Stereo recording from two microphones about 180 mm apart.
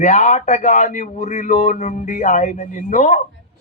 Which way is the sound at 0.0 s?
40° left (ahead or behind).